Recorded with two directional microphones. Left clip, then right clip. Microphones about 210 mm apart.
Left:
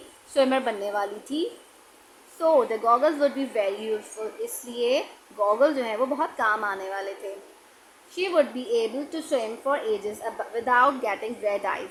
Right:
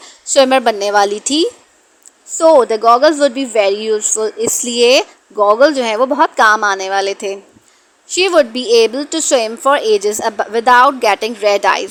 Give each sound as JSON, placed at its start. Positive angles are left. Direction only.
{"t": 0.3, "sound": "a woman's voice", "side_deg": -40}